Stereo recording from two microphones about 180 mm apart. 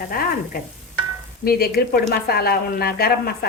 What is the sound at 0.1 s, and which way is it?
Speech, 55° left (ahead or behind).